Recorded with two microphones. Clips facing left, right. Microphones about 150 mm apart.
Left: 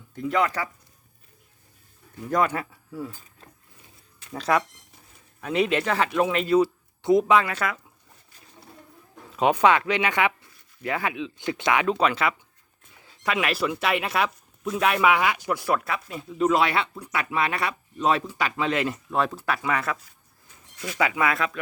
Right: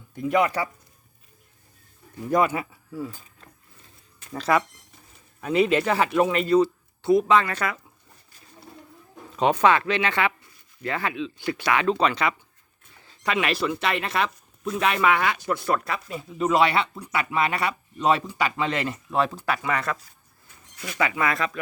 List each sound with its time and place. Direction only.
0.1 s speech: 10° right (ahead or behind)
2.3 s speech: 5° right (ahead or behind)
4.3 s speech: centre (ahead or behind)
7.0 s speech: 20° left (ahead or behind); by 7.8 s centre (ahead or behind)
9.3 s speech: 10° left (ahead or behind)
11.9 s speech: 5° left (ahead or behind)
21.0 s speech: 10° left (ahead or behind)